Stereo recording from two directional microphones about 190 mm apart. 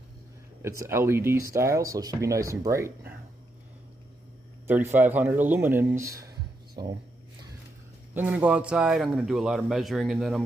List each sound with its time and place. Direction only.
0.6 s speech: 15° right (ahead or behind)
4.6 s speech: 10° right (ahead or behind)
8.1 s speech: 10° right (ahead or behind)